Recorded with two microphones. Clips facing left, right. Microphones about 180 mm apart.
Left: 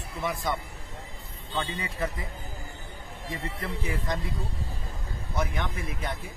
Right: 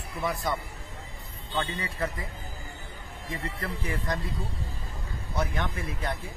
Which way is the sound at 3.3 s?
20° left (ahead or behind).